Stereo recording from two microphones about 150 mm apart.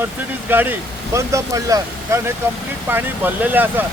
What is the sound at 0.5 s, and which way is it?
Speech, 15° right (ahead or behind).